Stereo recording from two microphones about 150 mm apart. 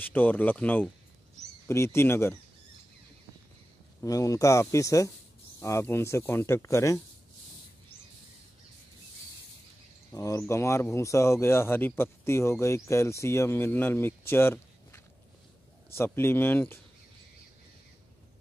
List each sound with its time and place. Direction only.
0.0 s speech: 10° left (ahead or behind)
4.0 s speech: 20° left (ahead or behind)
10.1 s speech: 20° left (ahead or behind)